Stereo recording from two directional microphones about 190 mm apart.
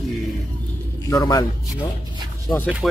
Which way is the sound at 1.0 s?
20° left (ahead or behind).